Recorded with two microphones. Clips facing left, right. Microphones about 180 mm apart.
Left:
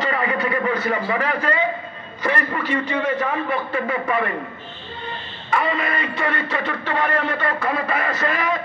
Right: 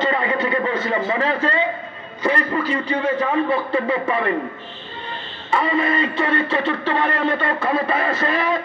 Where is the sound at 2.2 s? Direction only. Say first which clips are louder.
Right 3 dB; 30° right (ahead or behind).